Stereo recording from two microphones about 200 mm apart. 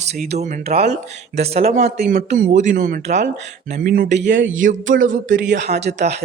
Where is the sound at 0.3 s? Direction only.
35° right (ahead or behind).